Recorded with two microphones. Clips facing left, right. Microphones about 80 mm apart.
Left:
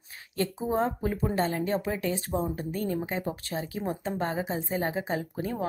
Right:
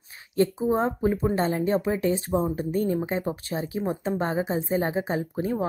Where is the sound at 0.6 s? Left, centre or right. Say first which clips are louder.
Right 4 dB; centre.